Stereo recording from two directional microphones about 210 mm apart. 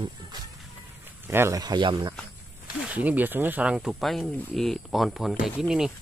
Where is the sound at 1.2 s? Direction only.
10° right (ahead or behind).